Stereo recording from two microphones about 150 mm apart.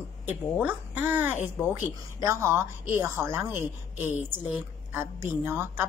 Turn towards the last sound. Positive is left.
turn(degrees=-15)  # may be behind; listen again after turning